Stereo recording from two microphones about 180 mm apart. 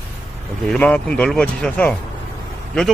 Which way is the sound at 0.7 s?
5° left (ahead or behind).